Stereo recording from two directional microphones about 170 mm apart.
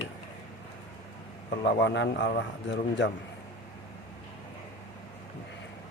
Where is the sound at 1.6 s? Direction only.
90° left.